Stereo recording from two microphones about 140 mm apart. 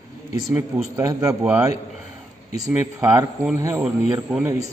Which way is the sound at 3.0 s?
25° right (ahead or behind).